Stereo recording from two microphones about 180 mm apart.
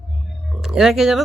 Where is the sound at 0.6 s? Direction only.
Centre (ahead or behind).